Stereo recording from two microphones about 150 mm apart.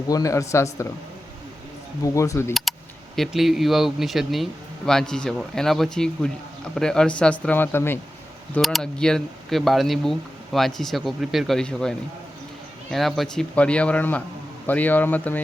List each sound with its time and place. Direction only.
0.1 s speech: 20° left (ahead or behind)
2.1 s speech: 20° left (ahead or behind)
2.5 s speech: centre (ahead or behind)
8.5 s speech: centre (ahead or behind)